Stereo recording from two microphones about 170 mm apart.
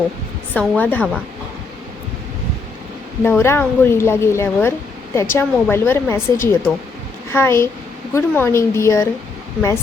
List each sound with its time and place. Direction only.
0.5 s a woman's voice: 5° left (ahead or behind)
3.2 s a woman's voice: 15° left (ahead or behind)